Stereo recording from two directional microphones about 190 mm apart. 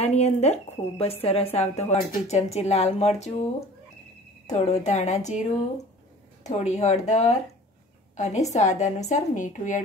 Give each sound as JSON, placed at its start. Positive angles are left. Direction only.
{"t": 0.0, "sound": "speech", "side_deg": 35}
{"t": 4.5, "sound": "speech", "side_deg": 35}
{"t": 6.4, "sound": "speech", "side_deg": 35}